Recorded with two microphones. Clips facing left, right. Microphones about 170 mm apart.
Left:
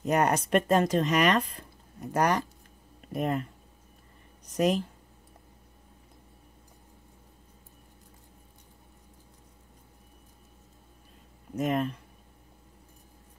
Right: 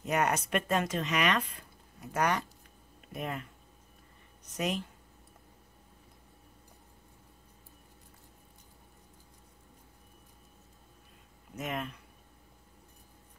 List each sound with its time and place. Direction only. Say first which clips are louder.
0.0 s speech: left 5 dB; 35° left (ahead or behind)
4.6 s speech: left 8 dB; 40° left (ahead or behind)
11.5 s speech: left 9 dB; 40° left (ahead or behind)